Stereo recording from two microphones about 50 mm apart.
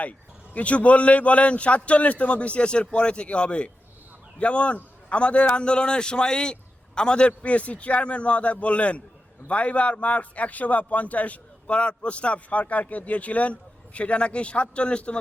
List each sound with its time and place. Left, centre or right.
0.0 s a man's voice: left